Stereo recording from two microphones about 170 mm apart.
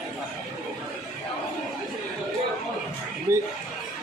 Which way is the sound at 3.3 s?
15° right (ahead or behind).